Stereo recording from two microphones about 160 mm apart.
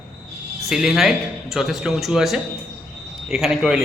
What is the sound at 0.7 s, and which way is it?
A man's voice, centre (ahead or behind).